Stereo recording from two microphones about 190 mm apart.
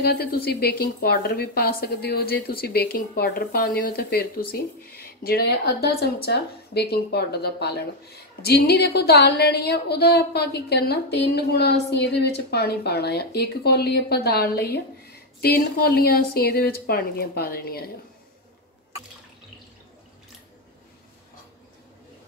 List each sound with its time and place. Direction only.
0.0 s a woman's voice: 55° left (ahead or behind)